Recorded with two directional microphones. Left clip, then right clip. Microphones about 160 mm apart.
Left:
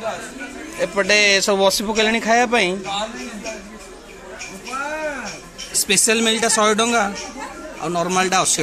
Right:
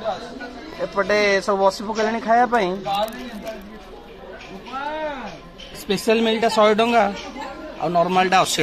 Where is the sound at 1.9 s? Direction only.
75° left (ahead or behind).